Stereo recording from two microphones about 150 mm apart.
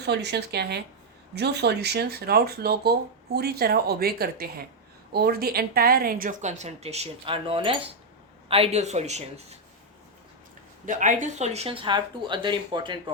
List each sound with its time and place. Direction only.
0.0 s a woman's voice: 90° right; by 9.6 s 50° right (ahead or behind)
10.8 s speech: 55° right (ahead or behind); by 13.0 s 30° right (ahead or behind)